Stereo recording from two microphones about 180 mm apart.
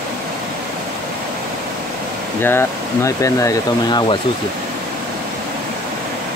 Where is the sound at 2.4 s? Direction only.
15° left (ahead or behind).